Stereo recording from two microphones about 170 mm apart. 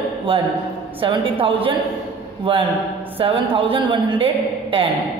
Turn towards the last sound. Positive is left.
turn(degrees=-30)  # may be behind; listen again after turning